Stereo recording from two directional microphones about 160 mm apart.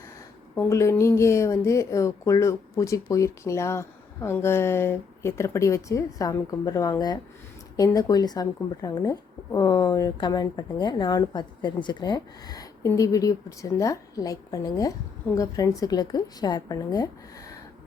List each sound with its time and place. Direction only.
0.5 s a woman's voice: 15° left (ahead or behind)